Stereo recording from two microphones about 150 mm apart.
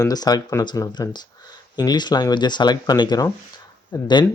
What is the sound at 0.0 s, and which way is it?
Speech, 25° left (ahead or behind).